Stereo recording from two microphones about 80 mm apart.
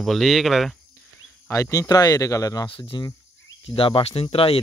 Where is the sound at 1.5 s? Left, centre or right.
Left.